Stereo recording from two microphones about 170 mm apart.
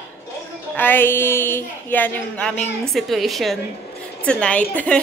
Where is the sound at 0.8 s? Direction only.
10° left (ahead or behind).